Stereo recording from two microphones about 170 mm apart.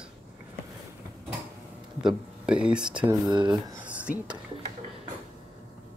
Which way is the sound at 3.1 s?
25° right (ahead or behind).